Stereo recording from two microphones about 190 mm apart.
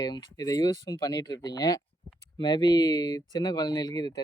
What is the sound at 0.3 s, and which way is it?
Speech, 20° left (ahead or behind).